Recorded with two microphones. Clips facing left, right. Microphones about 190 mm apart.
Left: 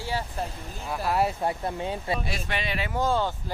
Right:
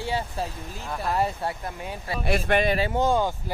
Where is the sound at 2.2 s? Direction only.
55° right (ahead or behind).